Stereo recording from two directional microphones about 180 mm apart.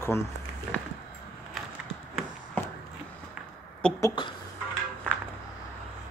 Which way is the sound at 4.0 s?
25° left (ahead or behind).